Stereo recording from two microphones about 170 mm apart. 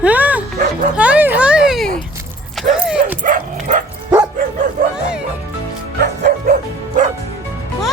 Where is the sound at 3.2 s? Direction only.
50° right (ahead or behind).